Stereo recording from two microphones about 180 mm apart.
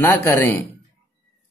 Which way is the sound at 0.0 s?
15° left (ahead or behind).